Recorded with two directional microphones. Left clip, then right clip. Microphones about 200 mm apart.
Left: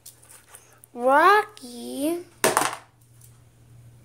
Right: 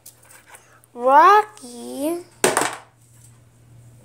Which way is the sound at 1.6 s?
15° right (ahead or behind).